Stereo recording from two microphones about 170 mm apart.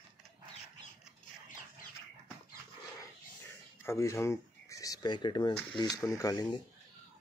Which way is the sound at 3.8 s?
15° left (ahead or behind).